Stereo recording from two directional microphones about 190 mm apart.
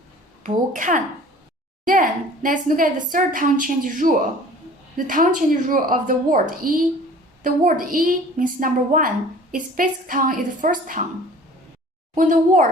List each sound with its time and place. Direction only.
0.4 s a woman's voice: 45° right (ahead or behind)
12.1 s a woman's voice: 45° right (ahead or behind)